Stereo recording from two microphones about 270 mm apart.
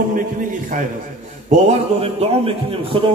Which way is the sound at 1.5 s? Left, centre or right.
Right.